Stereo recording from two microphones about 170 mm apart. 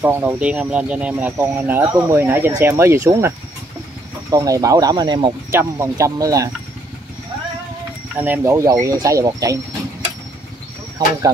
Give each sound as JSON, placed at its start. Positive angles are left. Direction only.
{"t": 0.0, "sound": "speech", "side_deg": -10}
{"t": 5.5, "sound": "speech", "side_deg": -15}
{"t": 8.2, "sound": "speech", "side_deg": -15}